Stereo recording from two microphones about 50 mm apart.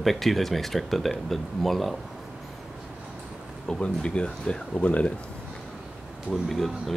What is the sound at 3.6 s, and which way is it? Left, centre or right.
Speech, centre.